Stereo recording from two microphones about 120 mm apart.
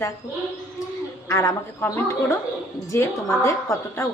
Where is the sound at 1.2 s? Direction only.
25° left (ahead or behind).